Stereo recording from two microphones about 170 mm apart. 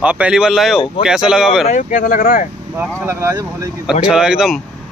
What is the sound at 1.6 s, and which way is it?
Speech, 50° left (ahead or behind).